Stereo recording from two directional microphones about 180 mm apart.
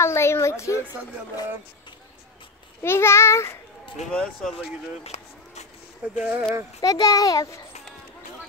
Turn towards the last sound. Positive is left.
turn(degrees=20)  # may be behind; listen again after turning